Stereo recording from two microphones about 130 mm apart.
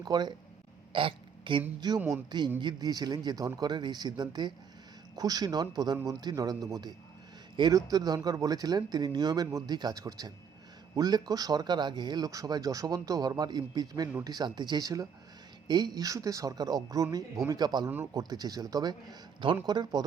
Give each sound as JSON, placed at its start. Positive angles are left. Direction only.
{"t": 0.0, "sound": "speech", "side_deg": -35}
{"t": 0.9, "sound": "a sound", "side_deg": -40}
{"t": 1.8, "sound": "speech", "side_deg": -30}